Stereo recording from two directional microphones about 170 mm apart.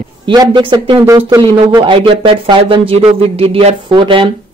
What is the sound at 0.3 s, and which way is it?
Speech, 25° right (ahead or behind).